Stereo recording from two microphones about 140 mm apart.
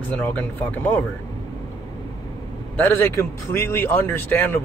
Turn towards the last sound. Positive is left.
turn(degrees=15)  # may be behind; listen again after turning